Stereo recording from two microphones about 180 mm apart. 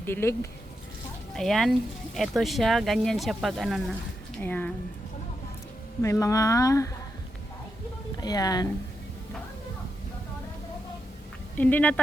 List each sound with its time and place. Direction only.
0.0 s speech: 15° left (ahead or behind)
1.3 s speech: centre (ahead or behind)
6.0 s speech: 15° left (ahead or behind)
8.2 s speech: 20° left (ahead or behind)
11.5 s speech: 10° left (ahead or behind)